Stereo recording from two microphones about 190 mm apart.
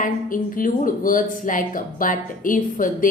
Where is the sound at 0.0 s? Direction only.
45° left (ahead or behind).